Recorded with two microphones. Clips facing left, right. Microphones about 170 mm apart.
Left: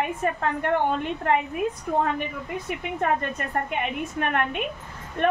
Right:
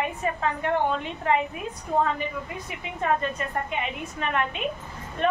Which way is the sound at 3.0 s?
50° left (ahead or behind).